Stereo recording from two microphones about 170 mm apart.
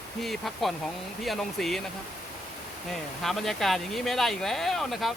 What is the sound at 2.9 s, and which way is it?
Speech, centre (ahead or behind).